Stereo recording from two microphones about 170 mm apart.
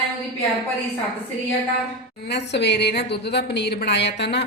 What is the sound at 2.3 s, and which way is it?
A woman's voice, 85° left.